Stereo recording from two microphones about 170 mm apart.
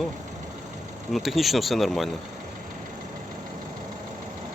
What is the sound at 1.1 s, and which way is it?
Speech, centre (ahead or behind).